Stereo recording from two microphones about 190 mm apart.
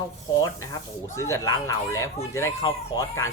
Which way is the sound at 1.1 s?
15° left (ahead or behind).